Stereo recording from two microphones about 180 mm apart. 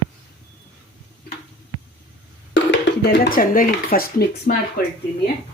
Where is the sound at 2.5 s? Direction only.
85° left; by 4.5 s 55° left (ahead or behind).